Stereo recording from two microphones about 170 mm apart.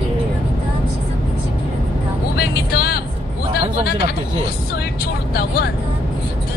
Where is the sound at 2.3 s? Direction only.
65° left (ahead or behind).